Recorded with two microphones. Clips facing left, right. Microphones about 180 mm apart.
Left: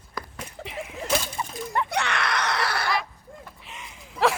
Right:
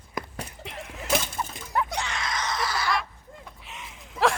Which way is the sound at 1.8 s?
65° left (ahead or behind).